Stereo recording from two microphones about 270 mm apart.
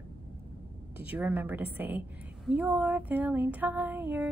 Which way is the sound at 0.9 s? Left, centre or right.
Centre.